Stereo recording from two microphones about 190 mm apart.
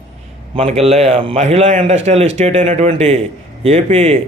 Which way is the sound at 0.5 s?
35° right (ahead or behind).